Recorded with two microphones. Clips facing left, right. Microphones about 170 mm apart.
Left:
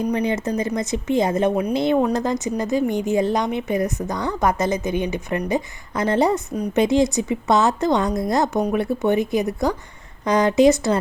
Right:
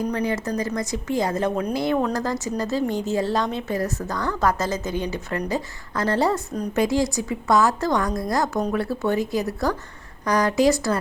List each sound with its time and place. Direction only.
0.1 s a woman's voice: 20° left (ahead or behind)